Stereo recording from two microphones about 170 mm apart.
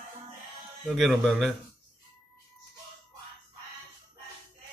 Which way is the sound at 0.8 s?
Centre (ahead or behind).